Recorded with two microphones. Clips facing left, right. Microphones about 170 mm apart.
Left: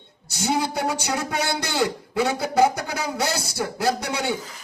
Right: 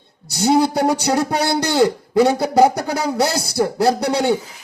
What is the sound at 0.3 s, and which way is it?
Speech, 35° right (ahead or behind).